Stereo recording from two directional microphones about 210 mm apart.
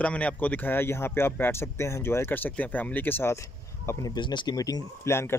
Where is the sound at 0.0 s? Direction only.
5° left (ahead or behind).